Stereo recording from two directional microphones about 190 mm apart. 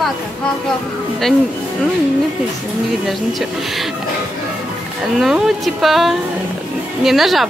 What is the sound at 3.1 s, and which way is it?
Speech, centre (ahead or behind).